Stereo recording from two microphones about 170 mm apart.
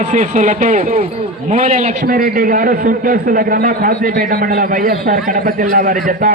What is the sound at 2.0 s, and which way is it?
A man's voice, 60° right (ahead or behind).